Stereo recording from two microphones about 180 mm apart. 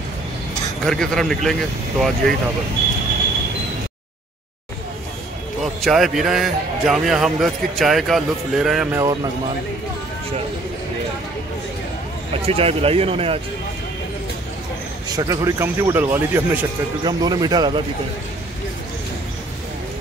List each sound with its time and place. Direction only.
0.8 s a man's voice: 5° left (ahead or behind)
5.8 s a man's voice: centre (ahead or behind)
8.9 s speech: 20° right (ahead or behind)
12.4 s speech: 30° right (ahead or behind)
15.1 s speech: 15° right (ahead or behind)
17.0 s speech: 20° right (ahead or behind)